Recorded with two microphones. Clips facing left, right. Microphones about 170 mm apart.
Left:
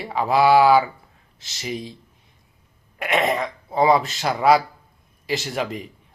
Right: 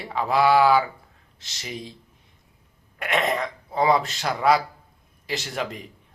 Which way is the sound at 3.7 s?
5° left (ahead or behind).